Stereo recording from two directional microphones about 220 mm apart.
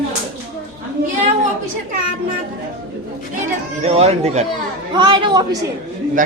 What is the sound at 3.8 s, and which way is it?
Speech, 30° right (ahead or behind).